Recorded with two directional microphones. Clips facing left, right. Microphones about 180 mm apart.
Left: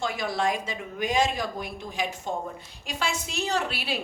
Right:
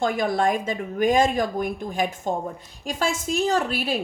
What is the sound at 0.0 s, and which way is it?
A woman's voice, 50° right (ahead or behind).